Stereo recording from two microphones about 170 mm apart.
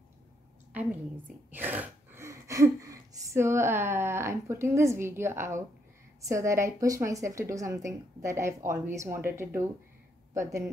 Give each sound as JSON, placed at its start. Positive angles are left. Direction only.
{"t": 0.7, "sound": "a woman's voice", "side_deg": -10}